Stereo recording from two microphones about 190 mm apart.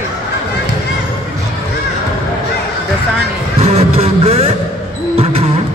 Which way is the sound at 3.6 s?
35° right (ahead or behind).